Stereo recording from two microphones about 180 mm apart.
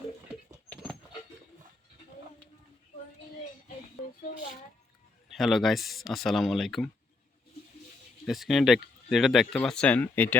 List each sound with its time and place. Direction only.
3.9 s a sound: 40° left (ahead or behind)
5.3 s speech: centre (ahead or behind)
8.3 s speech: centre (ahead or behind)